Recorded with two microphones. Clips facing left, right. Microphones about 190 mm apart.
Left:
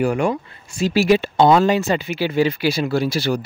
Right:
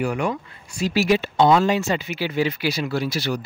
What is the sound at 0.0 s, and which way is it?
Speech, 30° left (ahead or behind).